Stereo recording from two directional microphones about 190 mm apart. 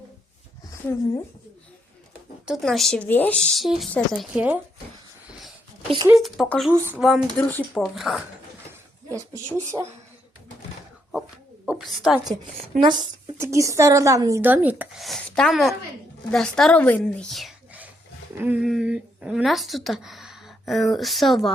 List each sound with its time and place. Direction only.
2.5 s speech: centre (ahead or behind)
6.1 s speech: centre (ahead or behind)
6.7 s speech: 10° right (ahead or behind)
7.0 s speech: centre (ahead or behind)
9.0 s speech: 15° right (ahead or behind)
11.6 s a sound: centre (ahead or behind)
12.8 s a woman's voice: 20° right (ahead or behind); by 21.5 s centre (ahead or behind)